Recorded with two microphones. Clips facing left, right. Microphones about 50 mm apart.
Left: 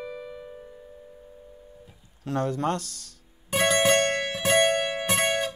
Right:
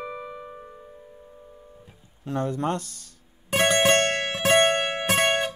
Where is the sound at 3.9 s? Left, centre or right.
Right.